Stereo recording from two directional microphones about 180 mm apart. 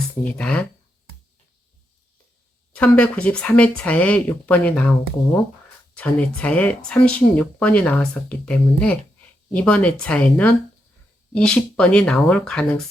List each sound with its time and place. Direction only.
0.3 s speech: 5° left (ahead or behind)
2.7 s speech: 10° left (ahead or behind)